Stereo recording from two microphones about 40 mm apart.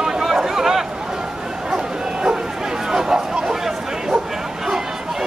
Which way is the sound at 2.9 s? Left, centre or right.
Centre.